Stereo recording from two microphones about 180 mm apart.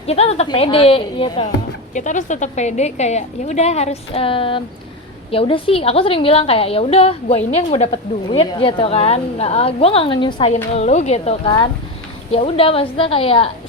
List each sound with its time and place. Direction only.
0.1 s a woman's voice: 35° left (ahead or behind)
1.9 s a woman's voice: 45° left (ahead or behind)